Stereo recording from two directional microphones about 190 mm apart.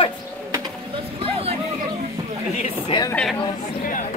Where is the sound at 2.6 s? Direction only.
30° left (ahead or behind).